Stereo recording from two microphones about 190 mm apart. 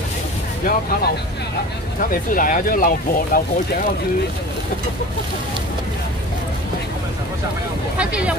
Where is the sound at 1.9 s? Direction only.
45° left (ahead or behind).